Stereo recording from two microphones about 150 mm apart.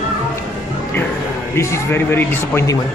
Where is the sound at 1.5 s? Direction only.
15° left (ahead or behind).